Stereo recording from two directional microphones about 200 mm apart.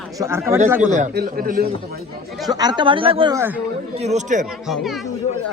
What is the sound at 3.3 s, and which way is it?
Speech, 10° right (ahead or behind).